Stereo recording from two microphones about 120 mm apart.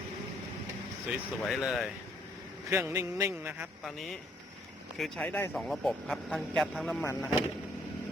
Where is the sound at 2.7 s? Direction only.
25° right (ahead or behind).